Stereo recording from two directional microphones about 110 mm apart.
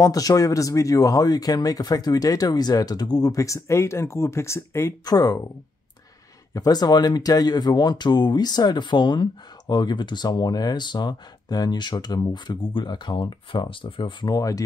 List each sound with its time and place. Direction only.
0.0 s speech: 35° left (ahead or behind)
5.0 s speech: 35° left (ahead or behind)
6.5 s speech: 35° left (ahead or behind); by 14.1 s 50° left (ahead or behind)
14.2 s speech: 35° left (ahead or behind)